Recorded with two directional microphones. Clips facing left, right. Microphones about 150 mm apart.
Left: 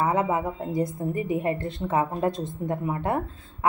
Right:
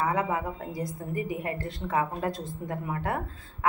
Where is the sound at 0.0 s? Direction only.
25° left (ahead or behind).